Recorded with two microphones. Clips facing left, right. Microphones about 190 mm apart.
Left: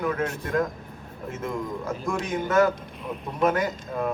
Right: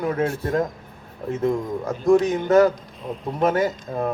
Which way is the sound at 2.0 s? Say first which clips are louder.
Right 12 dB; 30° right (ahead or behind).